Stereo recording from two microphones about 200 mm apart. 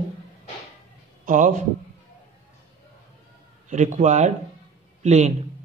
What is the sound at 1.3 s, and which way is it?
Speech, 40° right (ahead or behind).